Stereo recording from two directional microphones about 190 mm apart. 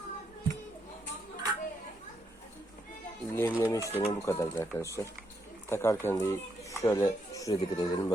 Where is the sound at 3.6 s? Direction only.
15° left (ahead or behind).